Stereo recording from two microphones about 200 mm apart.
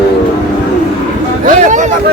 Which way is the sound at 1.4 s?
40° right (ahead or behind).